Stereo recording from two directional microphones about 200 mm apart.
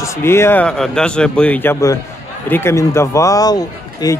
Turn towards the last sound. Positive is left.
turn(degrees=20)  # may be behind; listen again after turning